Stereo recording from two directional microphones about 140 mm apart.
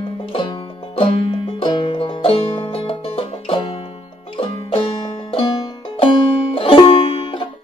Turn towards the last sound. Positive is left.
turn(degrees=40)  # may be behind; listen again after turning